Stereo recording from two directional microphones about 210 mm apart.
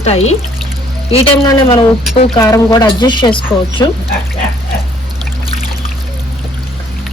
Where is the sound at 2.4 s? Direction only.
15° left (ahead or behind).